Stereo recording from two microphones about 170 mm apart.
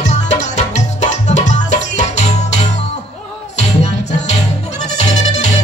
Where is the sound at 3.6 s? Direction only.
40° left (ahead or behind).